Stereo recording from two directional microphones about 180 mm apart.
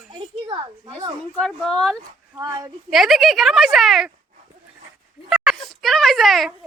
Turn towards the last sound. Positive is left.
turn(degrees=0)  # may be behind; listen again after turning